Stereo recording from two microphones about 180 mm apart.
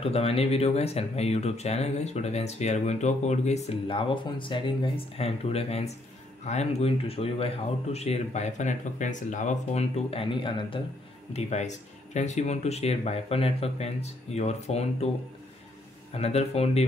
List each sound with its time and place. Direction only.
0.0 s speech: 35° left (ahead or behind)
11.3 s speech: 40° left (ahead or behind)
16.1 s speech: 35° left (ahead or behind)